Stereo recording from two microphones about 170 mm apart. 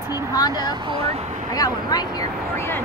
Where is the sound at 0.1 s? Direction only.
20° left (ahead or behind).